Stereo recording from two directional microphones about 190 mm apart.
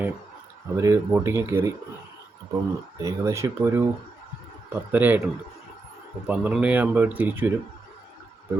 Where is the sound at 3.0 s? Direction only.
15° right (ahead or behind).